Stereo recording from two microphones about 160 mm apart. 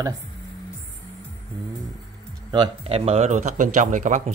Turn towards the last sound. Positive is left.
turn(degrees=-50)  # may be behind; listen again after turning